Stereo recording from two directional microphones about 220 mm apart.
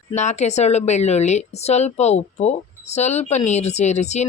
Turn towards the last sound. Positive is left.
turn(degrees=30)  # may be behind; listen again after turning